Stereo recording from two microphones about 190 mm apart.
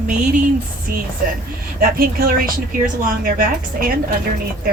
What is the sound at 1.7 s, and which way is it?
Speech, 50° right (ahead or behind).